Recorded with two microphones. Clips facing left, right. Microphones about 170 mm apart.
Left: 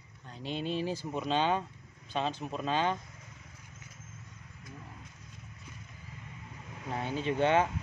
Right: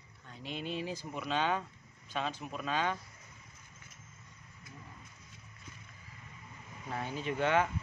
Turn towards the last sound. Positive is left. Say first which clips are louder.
# left 3 dB
turn(degrees=25)  # may be behind; listen again after turning